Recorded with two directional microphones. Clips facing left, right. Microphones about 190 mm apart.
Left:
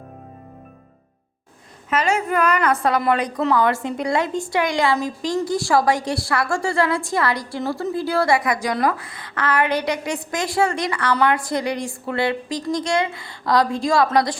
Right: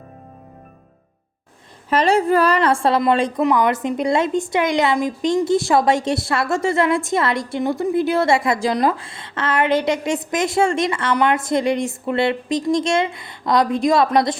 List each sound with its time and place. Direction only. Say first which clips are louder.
1.9 s a woman's voice: right 5 dB; 35° right (ahead or behind)